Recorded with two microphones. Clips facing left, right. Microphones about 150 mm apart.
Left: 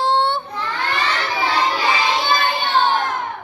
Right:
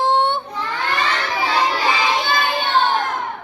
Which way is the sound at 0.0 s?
20° right (ahead or behind).